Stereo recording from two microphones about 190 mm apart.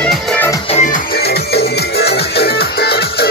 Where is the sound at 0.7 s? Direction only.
40° left (ahead or behind).